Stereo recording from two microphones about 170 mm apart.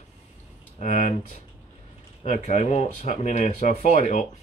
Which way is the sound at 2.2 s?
45° left (ahead or behind).